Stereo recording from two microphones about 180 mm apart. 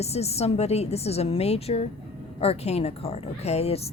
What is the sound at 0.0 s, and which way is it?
A woman's voice, 35° left (ahead or behind).